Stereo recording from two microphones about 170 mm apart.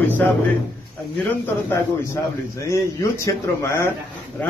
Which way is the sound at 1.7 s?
15° left (ahead or behind).